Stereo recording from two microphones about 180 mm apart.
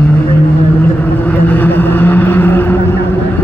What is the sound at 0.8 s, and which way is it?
Vehicle, 10° left (ahead or behind).